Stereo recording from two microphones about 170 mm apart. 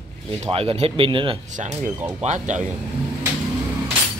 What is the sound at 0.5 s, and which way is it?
Speech, 35° right (ahead or behind).